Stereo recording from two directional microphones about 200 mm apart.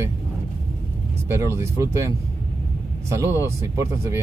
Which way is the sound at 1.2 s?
10° right (ahead or behind).